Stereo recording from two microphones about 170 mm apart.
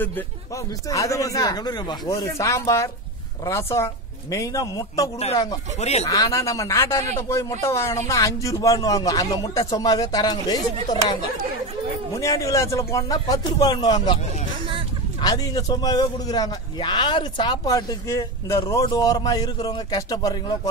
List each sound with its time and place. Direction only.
0.8 s a man's voice: 20° left (ahead or behind)
5.8 s speech: 40° left (ahead or behind)
6.0 s a man's voice: 20° left (ahead or behind)
12.2 s a man's voice: 20° left (ahead or behind)
15.2 s a man's voice: 20° left (ahead or behind)